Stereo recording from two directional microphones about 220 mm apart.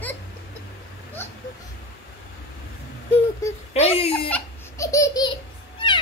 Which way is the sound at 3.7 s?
25° left (ahead or behind).